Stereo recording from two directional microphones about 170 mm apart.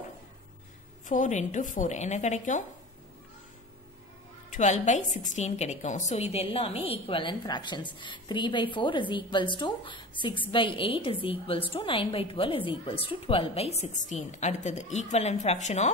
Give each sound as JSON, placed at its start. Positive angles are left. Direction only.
{"t": 1.0, "sound": "speech", "side_deg": 45}
{"t": 4.5, "sound": "a woman's voice", "side_deg": 45}